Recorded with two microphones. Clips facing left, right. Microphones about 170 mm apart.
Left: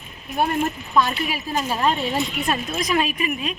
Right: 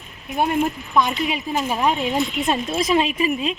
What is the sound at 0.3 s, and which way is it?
A woman's voice, 15° right (ahead or behind).